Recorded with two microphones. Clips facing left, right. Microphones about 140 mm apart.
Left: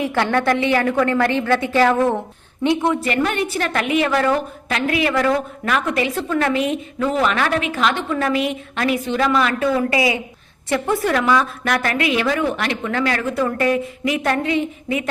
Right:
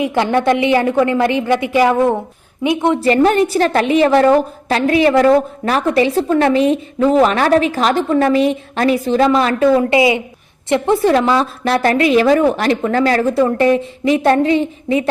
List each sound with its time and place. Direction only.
0.0 s a woman's voice: 20° right (ahead or behind)
3.0 s a woman's voice: 35° right (ahead or behind)